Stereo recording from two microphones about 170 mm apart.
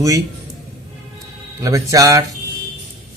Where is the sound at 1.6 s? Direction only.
20° right (ahead or behind).